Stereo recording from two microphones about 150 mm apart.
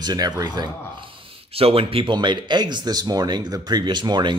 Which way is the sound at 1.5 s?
40° right (ahead or behind).